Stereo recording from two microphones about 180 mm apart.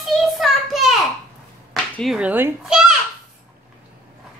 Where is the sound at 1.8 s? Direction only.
Centre (ahead or behind).